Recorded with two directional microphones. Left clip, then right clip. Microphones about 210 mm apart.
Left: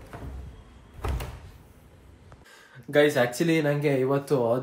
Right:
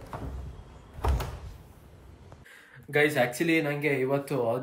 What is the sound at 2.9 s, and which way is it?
Speech, 20° left (ahead or behind).